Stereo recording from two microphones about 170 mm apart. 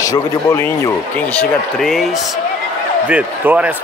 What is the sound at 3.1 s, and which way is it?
Speech, 5° right (ahead or behind).